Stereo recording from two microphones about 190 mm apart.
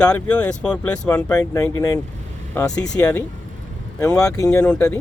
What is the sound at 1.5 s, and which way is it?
Speech, 15° left (ahead or behind).